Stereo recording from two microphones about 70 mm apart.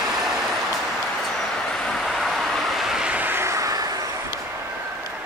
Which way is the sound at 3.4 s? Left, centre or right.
Right.